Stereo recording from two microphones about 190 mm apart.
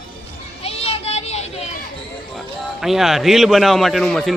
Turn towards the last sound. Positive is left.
turn(degrees=5)  # may be behind; listen again after turning